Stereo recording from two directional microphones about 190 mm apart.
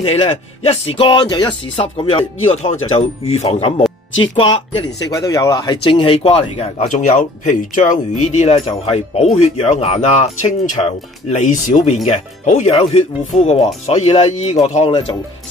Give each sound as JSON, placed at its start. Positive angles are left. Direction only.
{"t": 0.0, "sound": "speech", "side_deg": 30}